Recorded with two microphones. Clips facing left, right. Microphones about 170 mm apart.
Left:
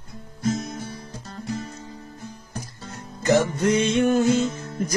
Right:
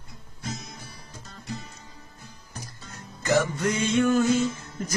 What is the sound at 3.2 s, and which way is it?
Music, 20° left (ahead or behind).